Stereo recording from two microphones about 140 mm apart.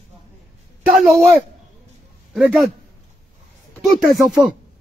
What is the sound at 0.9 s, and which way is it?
Speech, centre (ahead or behind).